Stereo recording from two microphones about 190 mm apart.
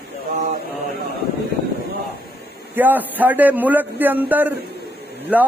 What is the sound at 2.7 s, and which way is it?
A man's voice, 10° right (ahead or behind).